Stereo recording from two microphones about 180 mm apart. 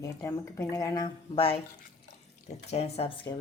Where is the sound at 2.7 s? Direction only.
35° left (ahead or behind).